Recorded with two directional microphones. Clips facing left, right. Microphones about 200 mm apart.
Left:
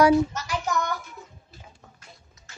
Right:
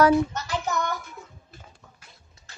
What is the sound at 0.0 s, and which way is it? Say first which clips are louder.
Child singing: left 1 dB; 10° left (ahead or behind).